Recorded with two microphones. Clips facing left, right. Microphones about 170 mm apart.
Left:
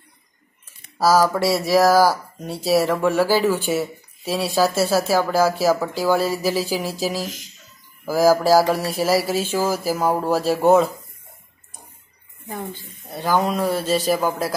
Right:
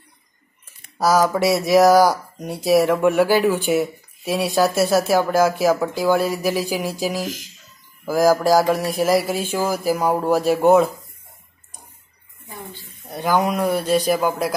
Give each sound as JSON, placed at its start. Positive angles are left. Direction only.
{"t": 1.4, "sound": "speech", "side_deg": -20}
{"t": 8.0, "sound": "speech", "side_deg": 5}
{"t": 9.2, "sound": "speech", "side_deg": -15}
{"t": 13.1, "sound": "speech", "side_deg": -15}
{"t": 14.0, "sound": "a man's voice", "side_deg": 0}